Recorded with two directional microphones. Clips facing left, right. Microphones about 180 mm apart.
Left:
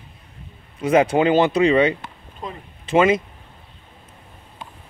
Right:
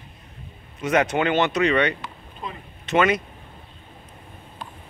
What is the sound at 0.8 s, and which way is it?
Speech, 30° left (ahead or behind).